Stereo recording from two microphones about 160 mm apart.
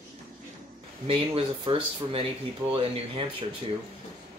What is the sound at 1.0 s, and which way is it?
Speech, 35° right (ahead or behind).